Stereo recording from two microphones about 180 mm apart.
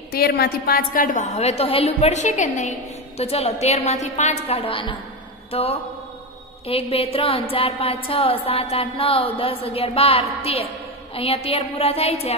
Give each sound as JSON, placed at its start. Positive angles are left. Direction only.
{"t": 0.1, "sound": "music", "side_deg": 60}
{"t": 4.5, "sound": "a woman's voice", "side_deg": 30}
{"t": 5.5, "sound": "music", "side_deg": 35}